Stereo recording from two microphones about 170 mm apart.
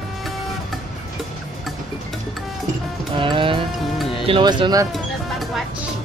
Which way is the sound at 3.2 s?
30° right (ahead or behind).